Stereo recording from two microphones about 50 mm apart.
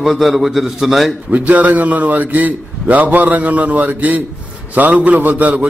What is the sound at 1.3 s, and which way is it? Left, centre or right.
A man's voice, right.